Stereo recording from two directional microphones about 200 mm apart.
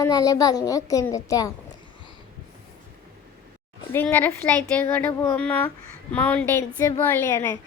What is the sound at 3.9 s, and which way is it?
A woman's voice, 10° left (ahead or behind).